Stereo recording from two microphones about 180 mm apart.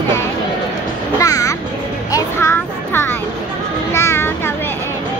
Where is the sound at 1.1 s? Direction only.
20° left (ahead or behind).